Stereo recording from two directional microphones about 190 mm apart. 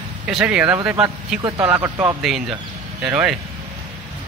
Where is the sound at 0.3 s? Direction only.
5° right (ahead or behind).